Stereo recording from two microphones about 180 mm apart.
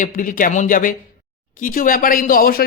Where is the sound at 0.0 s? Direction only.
45° left (ahead or behind).